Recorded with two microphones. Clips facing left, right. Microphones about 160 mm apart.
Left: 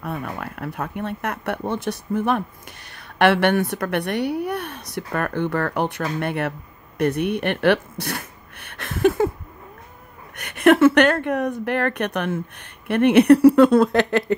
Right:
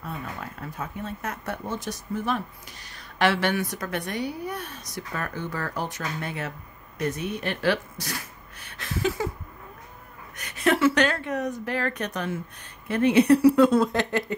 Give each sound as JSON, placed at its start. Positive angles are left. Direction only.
{"t": 0.0, "sound": "a woman's voice", "side_deg": 65}
{"t": 10.3, "sound": "a woman's voice", "side_deg": 60}